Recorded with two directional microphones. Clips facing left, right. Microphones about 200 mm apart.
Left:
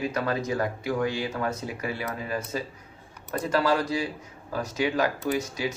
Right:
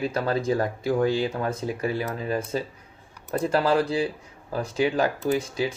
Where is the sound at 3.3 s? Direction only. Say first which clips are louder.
Right 3 dB; 30° right (ahead or behind).